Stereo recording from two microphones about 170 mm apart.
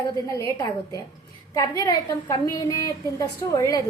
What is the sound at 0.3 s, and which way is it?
A woman's voice, 20° left (ahead or behind).